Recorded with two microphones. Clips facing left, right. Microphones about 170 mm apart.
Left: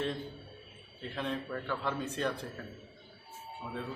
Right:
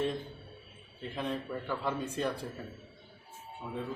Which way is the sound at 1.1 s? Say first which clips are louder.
Even; 10° right (ahead or behind).